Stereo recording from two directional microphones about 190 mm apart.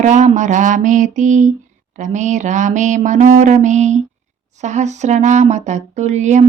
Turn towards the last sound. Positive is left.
turn(degrees=-40)  # may be behind; listen again after turning